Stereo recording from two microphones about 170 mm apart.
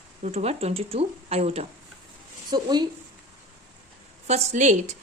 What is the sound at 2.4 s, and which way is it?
Speech, 25° right (ahead or behind).